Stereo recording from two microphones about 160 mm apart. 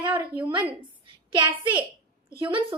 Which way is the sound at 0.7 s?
30° right (ahead or behind).